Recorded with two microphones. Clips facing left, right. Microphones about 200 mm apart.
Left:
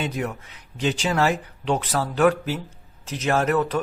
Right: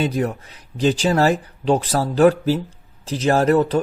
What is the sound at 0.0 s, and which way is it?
Speech, 35° right (ahead or behind).